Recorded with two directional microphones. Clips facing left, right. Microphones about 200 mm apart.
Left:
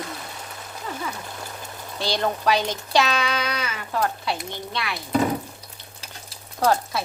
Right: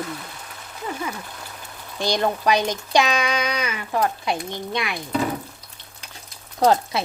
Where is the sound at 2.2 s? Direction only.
15° right (ahead or behind).